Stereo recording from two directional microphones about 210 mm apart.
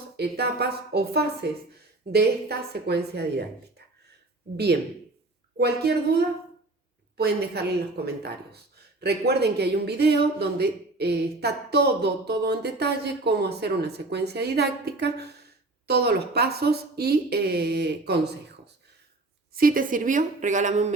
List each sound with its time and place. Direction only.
0.2 s speech: 50° right (ahead or behind)
4.5 s speech: 50° right (ahead or behind)
19.5 s a woman's voice: 45° right (ahead or behind)